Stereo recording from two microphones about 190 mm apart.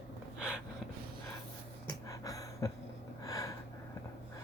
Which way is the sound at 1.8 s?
15° left (ahead or behind).